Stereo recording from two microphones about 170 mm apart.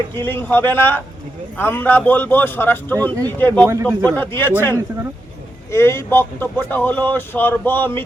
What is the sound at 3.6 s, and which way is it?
Speech, 15° right (ahead or behind).